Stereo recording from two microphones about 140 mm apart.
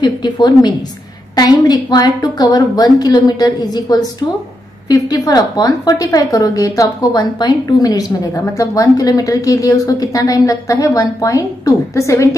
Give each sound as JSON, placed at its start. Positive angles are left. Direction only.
{"t": 0.0, "sound": "a woman's voice", "side_deg": 30}